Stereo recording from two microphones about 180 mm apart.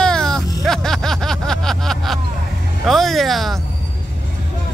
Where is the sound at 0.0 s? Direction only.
5° left (ahead or behind).